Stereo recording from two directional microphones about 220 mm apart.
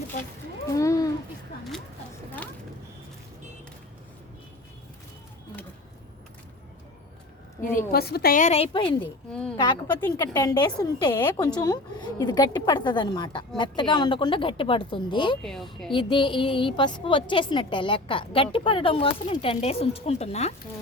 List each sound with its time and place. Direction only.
0.7 s speech: 15° left (ahead or behind)
7.6 s a woman's voice: 40° left (ahead or behind); by 9.0 s 25° left (ahead or behind)
9.0 s a woman's voice: 5° left (ahead or behind)
9.6 s a woman's voice: 20° left (ahead or behind)
10.0 s a woman's voice: 10° left (ahead or behind)
15.4 s a woman's voice: centre (ahead or behind)
15.9 s a woman's voice: 20° left (ahead or behind)